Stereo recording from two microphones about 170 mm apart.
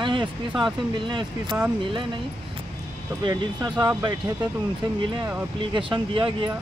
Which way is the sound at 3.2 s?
25° right (ahead or behind).